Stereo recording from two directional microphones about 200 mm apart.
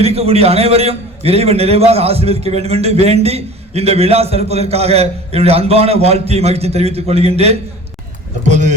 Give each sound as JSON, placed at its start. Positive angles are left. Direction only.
{"t": 0.0, "sound": "a man's voice", "side_deg": -30}